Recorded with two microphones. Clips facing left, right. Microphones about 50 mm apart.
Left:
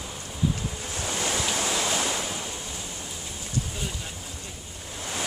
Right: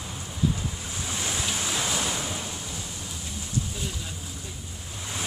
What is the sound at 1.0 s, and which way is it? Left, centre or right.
Waves, left.